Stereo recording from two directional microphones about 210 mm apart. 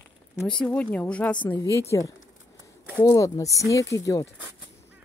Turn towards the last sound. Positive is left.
turn(degrees=15)  # may be behind; listen again after turning